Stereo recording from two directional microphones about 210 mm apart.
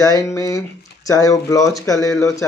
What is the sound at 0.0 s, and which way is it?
Speech, 15° left (ahead or behind).